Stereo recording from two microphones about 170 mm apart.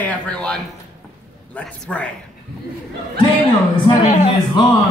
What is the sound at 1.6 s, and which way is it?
Speech, 10° left (ahead or behind).